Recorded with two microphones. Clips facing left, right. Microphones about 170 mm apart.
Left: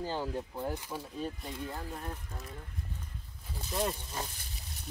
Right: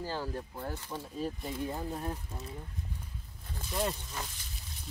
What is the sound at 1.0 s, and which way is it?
Speech, centre (ahead or behind).